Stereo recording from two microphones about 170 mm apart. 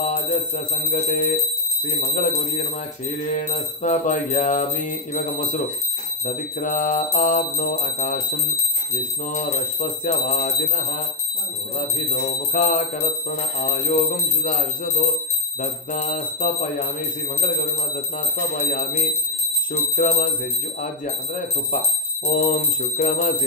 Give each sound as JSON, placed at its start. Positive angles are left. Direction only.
{"t": 0.0, "sound": "bell", "side_deg": 40}
{"t": 19.7, "sound": "bell", "side_deg": 50}
{"t": 21.7, "sound": "speech", "side_deg": 50}
{"t": 22.9, "sound": "bell", "side_deg": 55}